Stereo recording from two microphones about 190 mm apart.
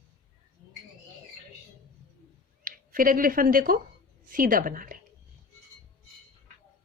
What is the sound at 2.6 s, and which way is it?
A woman's voice, 45° right (ahead or behind).